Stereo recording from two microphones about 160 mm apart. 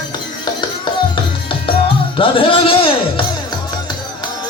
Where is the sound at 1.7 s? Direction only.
35° left (ahead or behind).